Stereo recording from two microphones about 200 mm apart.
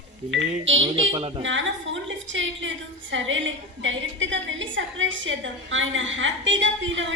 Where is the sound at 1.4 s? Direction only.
70° right (ahead or behind).